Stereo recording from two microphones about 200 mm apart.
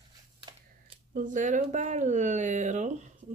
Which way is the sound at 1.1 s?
40° right (ahead or behind).